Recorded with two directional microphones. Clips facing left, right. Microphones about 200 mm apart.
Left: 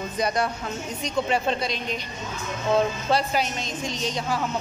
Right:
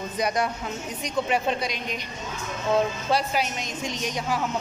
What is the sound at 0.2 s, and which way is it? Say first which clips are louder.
A woman's voice: left 1 dB; 15° right (ahead or behind).